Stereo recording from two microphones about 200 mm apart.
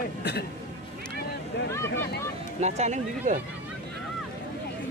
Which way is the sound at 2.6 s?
35° right (ahead or behind).